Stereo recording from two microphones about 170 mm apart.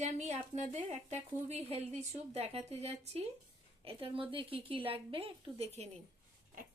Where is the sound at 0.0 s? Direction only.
40° right (ahead or behind).